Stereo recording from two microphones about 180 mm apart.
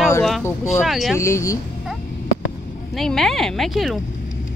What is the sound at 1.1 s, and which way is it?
Speech, 15° left (ahead or behind).